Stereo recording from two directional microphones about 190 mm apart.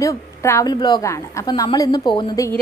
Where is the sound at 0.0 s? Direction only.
15° left (ahead or behind).